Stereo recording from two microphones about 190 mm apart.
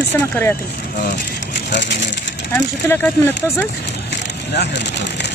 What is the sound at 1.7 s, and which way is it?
Speech, 70° left (ahead or behind).